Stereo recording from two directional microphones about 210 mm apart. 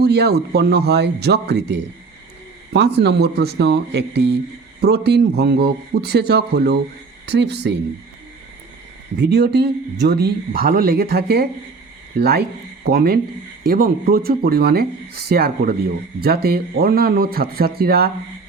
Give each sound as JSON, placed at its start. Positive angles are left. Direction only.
{"t": 0.0, "sound": "speech", "side_deg": -50}
{"t": 2.7, "sound": "speech", "side_deg": -50}
{"t": 9.1, "sound": "speech", "side_deg": -55}